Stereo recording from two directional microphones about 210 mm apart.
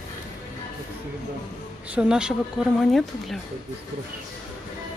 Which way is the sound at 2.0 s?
5° right (ahead or behind).